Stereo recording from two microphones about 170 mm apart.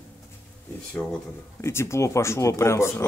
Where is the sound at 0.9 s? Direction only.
5° left (ahead or behind).